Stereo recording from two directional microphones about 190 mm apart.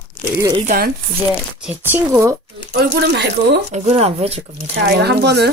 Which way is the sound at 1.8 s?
10° right (ahead or behind).